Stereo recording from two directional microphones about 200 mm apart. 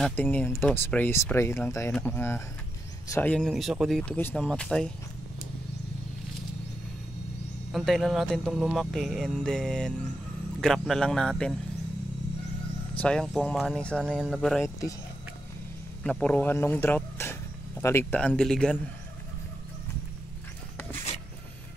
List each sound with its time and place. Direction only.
0.0 s speech: 10° left (ahead or behind)
7.7 s speech: centre (ahead or behind)
13.0 s speech: 5° left (ahead or behind)
16.0 s speech: 5° left (ahead or behind)